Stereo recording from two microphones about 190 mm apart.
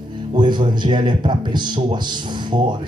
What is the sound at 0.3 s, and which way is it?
Speech, 25° right (ahead or behind).